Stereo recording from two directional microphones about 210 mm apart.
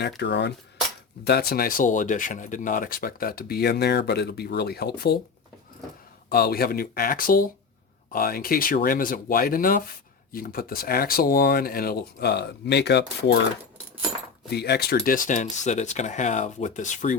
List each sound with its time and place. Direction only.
0.2 s a sound: 55° left (ahead or behind)
1.2 s speech: 50° left (ahead or behind)
6.2 s speech: 45° left (ahead or behind)
14.5 s speech: 50° left (ahead or behind)